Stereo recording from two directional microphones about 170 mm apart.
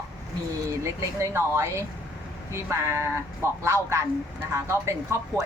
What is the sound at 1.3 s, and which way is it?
Speech, 15° right (ahead or behind).